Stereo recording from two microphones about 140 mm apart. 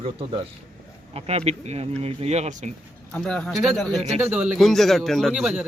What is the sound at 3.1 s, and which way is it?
Speech, 5° left (ahead or behind).